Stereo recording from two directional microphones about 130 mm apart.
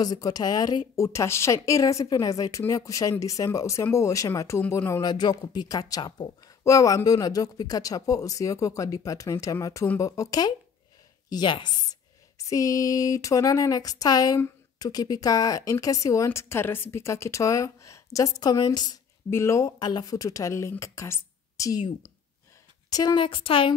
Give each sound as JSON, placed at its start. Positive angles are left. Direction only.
{"t": 0.0, "sound": "speech", "side_deg": 30}
{"t": 5.0, "sound": "speech", "side_deg": 35}
{"t": 19.3, "sound": "speech", "side_deg": 20}
{"t": 22.8, "sound": "speech", "side_deg": 30}